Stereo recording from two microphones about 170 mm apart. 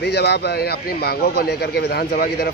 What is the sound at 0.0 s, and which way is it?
Speech, 75° left (ahead or behind).